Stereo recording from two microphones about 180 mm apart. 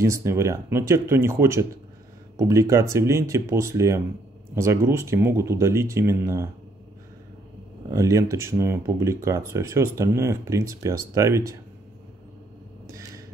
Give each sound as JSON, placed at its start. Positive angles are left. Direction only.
{"t": 0.0, "sound": "speech", "side_deg": -15}
{"t": 7.9, "sound": "speech", "side_deg": -15}